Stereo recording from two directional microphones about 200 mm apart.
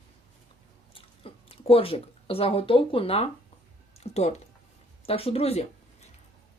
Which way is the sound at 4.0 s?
30° left (ahead or behind).